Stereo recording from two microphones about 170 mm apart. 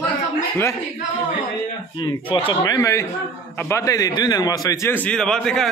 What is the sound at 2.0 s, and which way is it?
A man's voice, 30° left (ahead or behind).